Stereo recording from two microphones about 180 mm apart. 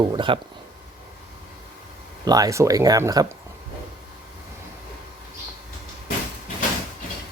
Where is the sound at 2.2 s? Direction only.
20° right (ahead or behind).